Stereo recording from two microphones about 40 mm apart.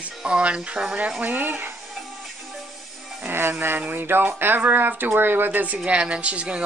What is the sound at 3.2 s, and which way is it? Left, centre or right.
Music, right.